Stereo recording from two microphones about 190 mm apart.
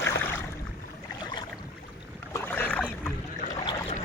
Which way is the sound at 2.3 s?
10° left (ahead or behind).